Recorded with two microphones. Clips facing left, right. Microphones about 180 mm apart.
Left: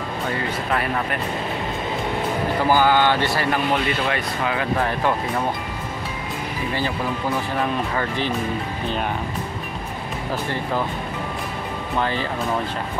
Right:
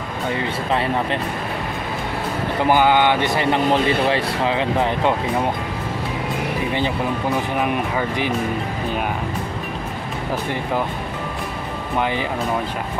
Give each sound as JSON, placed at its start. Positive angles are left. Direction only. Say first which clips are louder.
{"t": 0.3, "sound": "speech", "louder": "right 3 dB", "side_deg": -25}
{"t": 2.6, "sound": "speech", "louder": "right 2 dB", "side_deg": -20}
{"t": 7.5, "sound": "speech", "louder": "right 2 dB", "side_deg": -15}
{"t": 12.0, "sound": "speech", "louder": "right 2 dB", "side_deg": -15}